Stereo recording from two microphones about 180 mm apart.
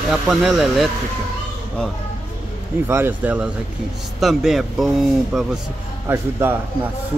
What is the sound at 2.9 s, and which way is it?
Speech, 10° right (ahead or behind).